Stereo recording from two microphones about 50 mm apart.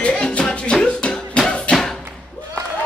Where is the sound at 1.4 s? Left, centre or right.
Centre.